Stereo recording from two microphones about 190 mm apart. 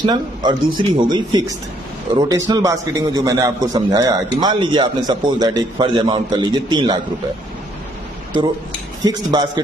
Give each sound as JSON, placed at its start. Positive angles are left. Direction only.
{"t": 0.0, "sound": "a man's voice", "side_deg": -20}
{"t": 9.0, "sound": "a man's voice", "side_deg": -20}